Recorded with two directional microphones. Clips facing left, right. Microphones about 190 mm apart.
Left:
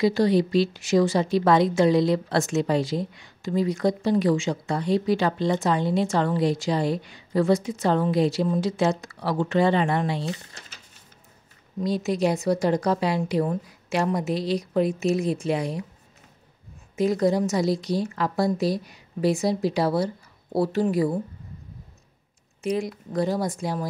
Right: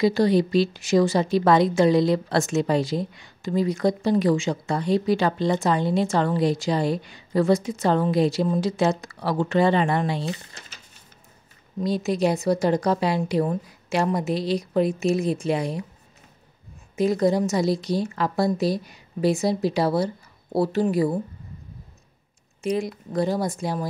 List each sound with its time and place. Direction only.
0.0 s speech: 40° right (ahead or behind)
11.8 s a woman's voice: 30° right (ahead or behind)
16.9 s a woman's voice: 25° right (ahead or behind)
22.6 s a woman's voice: 25° right (ahead or behind)